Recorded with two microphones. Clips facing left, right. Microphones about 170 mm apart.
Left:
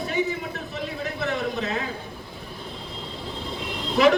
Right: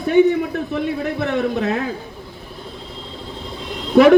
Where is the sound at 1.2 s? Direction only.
60° right (ahead or behind).